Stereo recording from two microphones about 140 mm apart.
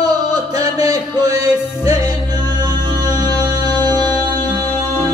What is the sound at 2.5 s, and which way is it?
Music, 30° right (ahead or behind).